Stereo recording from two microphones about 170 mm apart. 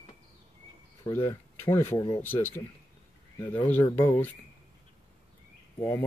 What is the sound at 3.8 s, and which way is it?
Speech, 15° left (ahead or behind).